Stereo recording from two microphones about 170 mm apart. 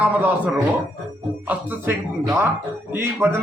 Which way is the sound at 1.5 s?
15° right (ahead or behind).